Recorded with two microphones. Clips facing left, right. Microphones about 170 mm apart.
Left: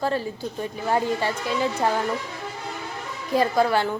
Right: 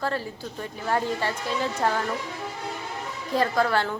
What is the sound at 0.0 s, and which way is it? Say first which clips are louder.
A woman's voice: left 4 dB; 20° left (ahead or behind).